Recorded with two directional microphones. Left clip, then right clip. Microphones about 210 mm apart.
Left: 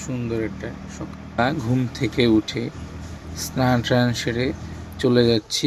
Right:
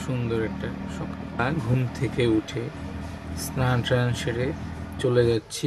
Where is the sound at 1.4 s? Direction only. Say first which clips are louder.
Left 5 dB; 20° left (ahead or behind).